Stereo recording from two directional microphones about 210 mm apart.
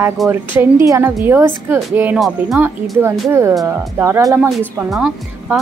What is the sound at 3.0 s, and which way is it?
Speech, 15° right (ahead or behind).